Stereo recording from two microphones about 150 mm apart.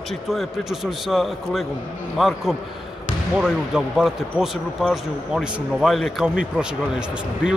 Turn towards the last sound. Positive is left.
turn(degrees=-5)  # may be behind; listen again after turning